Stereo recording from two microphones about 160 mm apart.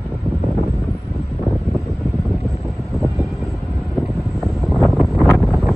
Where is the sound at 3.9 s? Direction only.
Centre (ahead or behind).